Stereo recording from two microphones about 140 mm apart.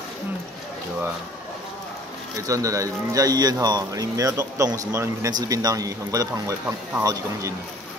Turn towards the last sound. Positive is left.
turn(degrees=-25)  # may be behind; listen again after turning